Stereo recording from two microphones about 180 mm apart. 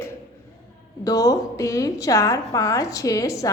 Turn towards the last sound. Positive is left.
turn(degrees=20)  # may be behind; listen again after turning